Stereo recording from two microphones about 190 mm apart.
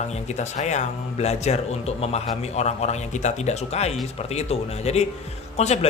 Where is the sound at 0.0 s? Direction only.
35° left (ahead or behind).